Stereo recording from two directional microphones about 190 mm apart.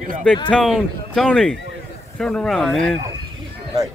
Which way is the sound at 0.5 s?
Centre (ahead or behind).